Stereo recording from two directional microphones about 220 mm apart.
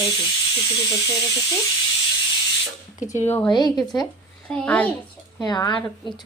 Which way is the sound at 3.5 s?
20° left (ahead or behind).